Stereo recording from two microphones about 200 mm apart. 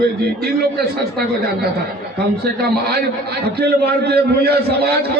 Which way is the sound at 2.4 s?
55° right (ahead or behind).